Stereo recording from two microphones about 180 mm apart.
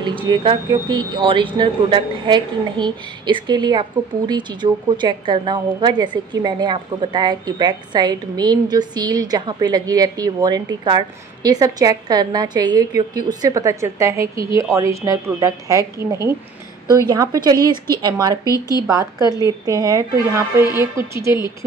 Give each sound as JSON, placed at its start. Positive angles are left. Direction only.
{"t": 0.0, "sound": "a woman's voice", "side_deg": -25}